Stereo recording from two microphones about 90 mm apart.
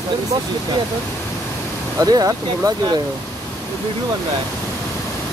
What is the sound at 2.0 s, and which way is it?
Speech, 45° right (ahead or behind).